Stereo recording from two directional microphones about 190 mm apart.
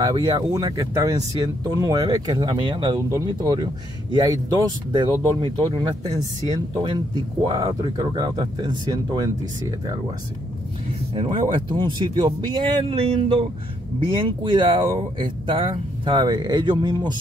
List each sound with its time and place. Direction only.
0.0 s speech: 20° right (ahead or behind)
11.1 s speech: 25° right (ahead or behind)